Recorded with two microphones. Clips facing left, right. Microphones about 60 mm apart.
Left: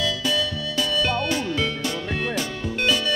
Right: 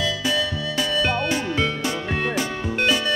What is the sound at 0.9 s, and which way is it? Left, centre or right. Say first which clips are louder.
Music: right 1 dB; centre.